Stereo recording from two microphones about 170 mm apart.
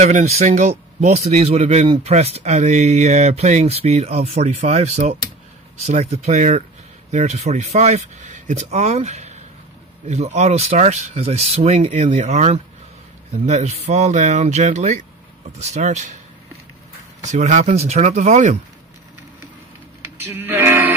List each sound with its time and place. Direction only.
0.0 s speech: 40° right (ahead or behind)
17.3 s speech: 45° right (ahead or behind)
20.2 s music: 10° right (ahead or behind)